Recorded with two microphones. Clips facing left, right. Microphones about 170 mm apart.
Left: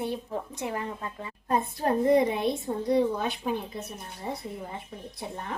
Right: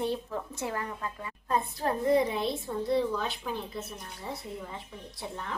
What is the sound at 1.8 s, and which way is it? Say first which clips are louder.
Speech: left 4 dB; 55° left (ahead or behind).